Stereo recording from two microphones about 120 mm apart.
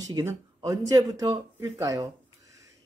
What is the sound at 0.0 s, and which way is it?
Speech, 25° right (ahead or behind).